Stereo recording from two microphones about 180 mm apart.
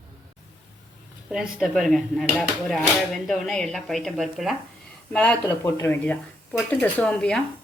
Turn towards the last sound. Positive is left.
turn(degrees=5)  # may be behind; listen again after turning